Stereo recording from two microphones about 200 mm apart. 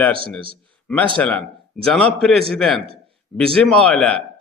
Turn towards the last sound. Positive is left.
turn(degrees=5)  # may be behind; listen again after turning